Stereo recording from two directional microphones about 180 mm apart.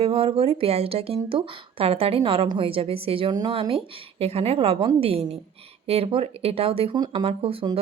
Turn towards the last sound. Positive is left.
turn(degrees=-30)  # may be behind; listen again after turning